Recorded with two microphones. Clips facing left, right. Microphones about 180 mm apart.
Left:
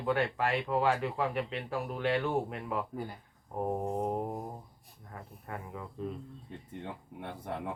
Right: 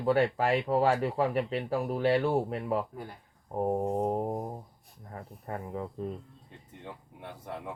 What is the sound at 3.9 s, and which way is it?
Mantra, 35° right (ahead or behind).